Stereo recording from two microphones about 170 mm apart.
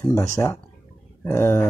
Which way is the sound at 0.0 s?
20° left (ahead or behind).